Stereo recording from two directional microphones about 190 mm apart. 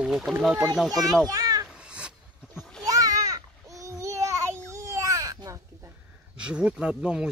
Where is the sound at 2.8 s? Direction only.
20° right (ahead or behind).